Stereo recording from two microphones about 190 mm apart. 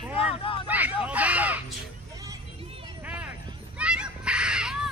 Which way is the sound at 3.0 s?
5° right (ahead or behind).